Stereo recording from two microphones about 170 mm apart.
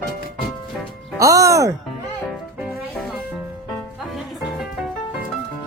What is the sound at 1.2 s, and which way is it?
Speech, 20° right (ahead or behind).